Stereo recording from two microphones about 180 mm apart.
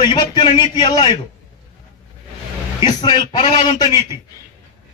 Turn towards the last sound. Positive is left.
turn(degrees=35)  # may be behind; listen again after turning